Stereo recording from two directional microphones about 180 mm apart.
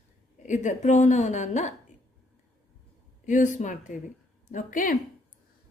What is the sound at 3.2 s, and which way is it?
A woman's voice, 45° left (ahead or behind).